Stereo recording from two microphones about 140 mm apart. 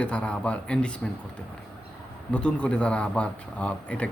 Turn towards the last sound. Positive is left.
turn(degrees=10)  # may be behind; listen again after turning